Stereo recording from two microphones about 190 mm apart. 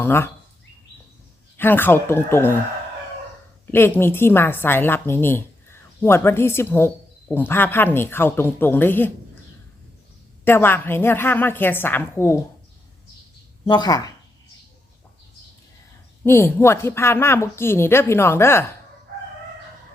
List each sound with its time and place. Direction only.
0.0 s speech: 10° left (ahead or behind)
1.5 s a woman's voice: 10° left (ahead or behind)
3.7 s a woman's voice: 10° left (ahead or behind)
10.4 s a woman's voice: 10° left (ahead or behind)
13.7 s speech: 20° left (ahead or behind)
16.2 s a woman's voice: 15° left (ahead or behind)